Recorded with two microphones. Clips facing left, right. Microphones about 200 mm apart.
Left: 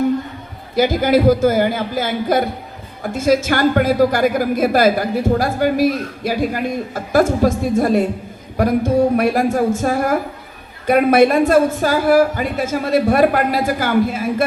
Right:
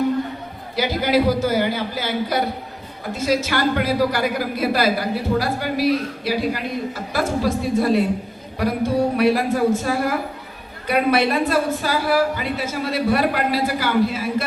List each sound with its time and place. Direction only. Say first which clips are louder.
0.8 s a man's voice: left 5 dB; 50° left (ahead or behind)